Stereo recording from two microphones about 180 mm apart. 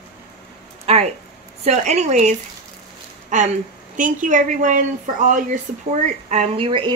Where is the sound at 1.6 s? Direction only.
40° right (ahead or behind).